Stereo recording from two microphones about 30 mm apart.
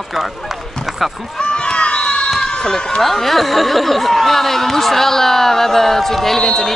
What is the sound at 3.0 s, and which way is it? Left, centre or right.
Speech, centre.